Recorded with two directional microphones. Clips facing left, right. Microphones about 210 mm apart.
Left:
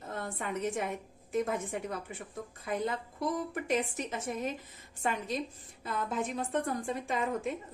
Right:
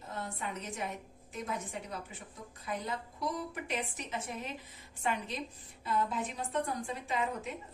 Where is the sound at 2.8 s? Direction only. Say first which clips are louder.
Left 4 dB; 50° left (ahead or behind).